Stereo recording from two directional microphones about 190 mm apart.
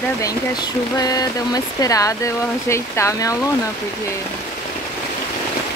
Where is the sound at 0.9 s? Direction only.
20° left (ahead or behind).